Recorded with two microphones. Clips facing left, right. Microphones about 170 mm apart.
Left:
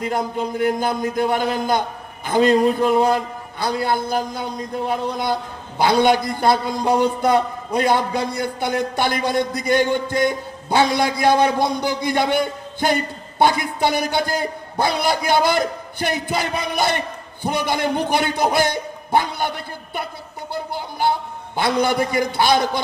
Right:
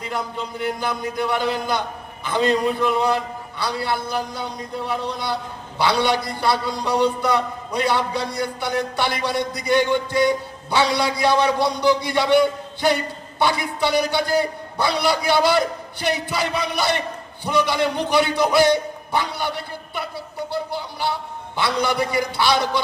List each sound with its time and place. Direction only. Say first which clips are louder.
0.0 s a man's voice: left 5 dB; 45° left (ahead or behind)